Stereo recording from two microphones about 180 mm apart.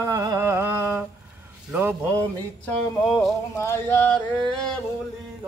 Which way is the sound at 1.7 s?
10° right (ahead or behind).